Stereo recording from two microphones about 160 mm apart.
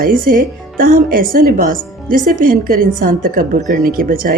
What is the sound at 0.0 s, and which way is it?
Speech, 65° right (ahead or behind).